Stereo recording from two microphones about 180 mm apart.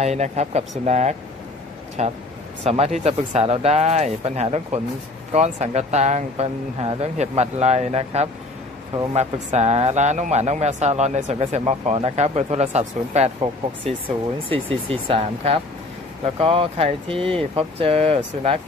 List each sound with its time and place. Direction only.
0.0 s a man's voice: 40° right (ahead or behind)